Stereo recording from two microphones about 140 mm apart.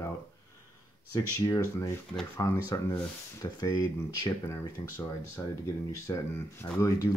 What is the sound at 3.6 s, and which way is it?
Speech, 25° left (ahead or behind).